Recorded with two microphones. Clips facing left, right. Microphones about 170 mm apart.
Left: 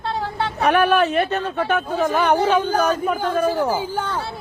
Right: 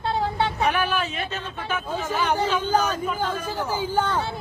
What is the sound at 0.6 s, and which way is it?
A man's voice, 65° left (ahead or behind).